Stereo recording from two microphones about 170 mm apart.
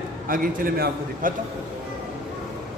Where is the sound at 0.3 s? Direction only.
55° right (ahead or behind).